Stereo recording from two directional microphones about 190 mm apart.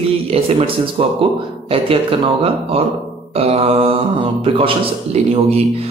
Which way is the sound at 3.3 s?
30° right (ahead or behind).